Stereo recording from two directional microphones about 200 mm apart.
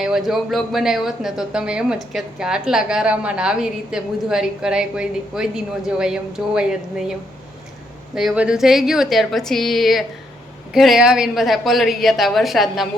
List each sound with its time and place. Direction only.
0.0 s speech: centre (ahead or behind)
8.1 s speech: centre (ahead or behind)